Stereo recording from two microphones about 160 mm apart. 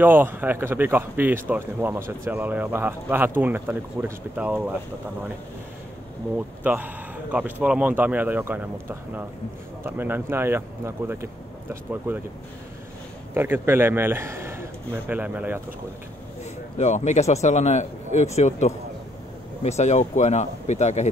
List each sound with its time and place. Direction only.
0.0 s a man's voice: 10° right (ahead or behind)
6.3 s a man's voice: 10° right (ahead or behind)
13.3 s speech: 15° right (ahead or behind)
16.7 s speech: 45° left (ahead or behind)